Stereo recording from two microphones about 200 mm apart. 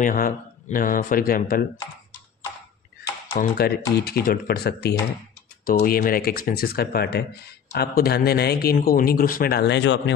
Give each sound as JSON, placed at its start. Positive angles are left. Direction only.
{"t": 0.0, "sound": "speech", "side_deg": 40}
{"t": 3.3, "sound": "speech", "side_deg": 50}